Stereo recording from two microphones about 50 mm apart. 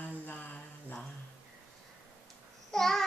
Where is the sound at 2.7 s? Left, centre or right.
Centre.